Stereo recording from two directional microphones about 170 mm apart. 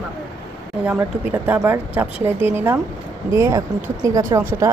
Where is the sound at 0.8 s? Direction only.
10° right (ahead or behind).